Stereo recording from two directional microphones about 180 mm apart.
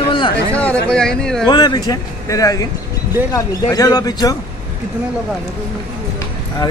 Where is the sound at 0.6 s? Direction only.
5° left (ahead or behind).